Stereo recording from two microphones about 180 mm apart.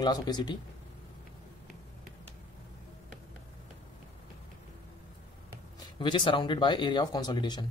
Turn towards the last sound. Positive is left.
turn(degrees=25)  # may be behind; listen again after turning